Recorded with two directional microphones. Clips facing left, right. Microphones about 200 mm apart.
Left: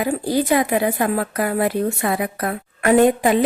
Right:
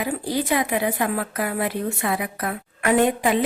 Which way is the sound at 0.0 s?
40° left (ahead or behind).